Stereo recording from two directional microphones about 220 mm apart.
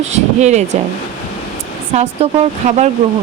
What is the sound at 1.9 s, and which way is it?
Speech, 30° right (ahead or behind).